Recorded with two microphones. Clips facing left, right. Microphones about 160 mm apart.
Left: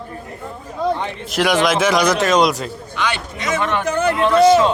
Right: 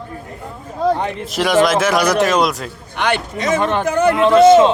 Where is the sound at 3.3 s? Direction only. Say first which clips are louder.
Right 2 dB; 35° right (ahead or behind).